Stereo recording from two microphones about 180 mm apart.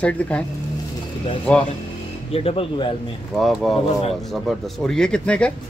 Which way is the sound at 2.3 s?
30° left (ahead or behind).